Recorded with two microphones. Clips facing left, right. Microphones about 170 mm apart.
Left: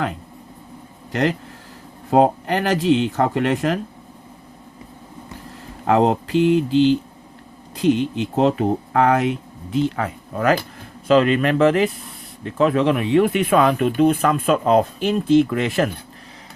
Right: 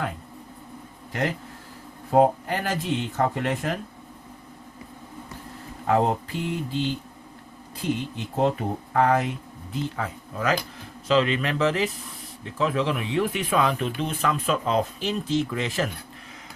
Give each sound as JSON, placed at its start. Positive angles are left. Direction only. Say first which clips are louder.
{"t": 2.0, "sound": "speech", "louder": "left 3 dB", "side_deg": 90}
{"t": 5.8, "sound": "speech", "louder": "left 5 dB", "side_deg": 90}
{"t": 10.3, "sound": "speech", "louder": "left 7 dB", "side_deg": 55}